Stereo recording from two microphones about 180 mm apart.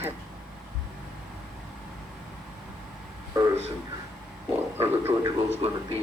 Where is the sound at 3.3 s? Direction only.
20° right (ahead or behind).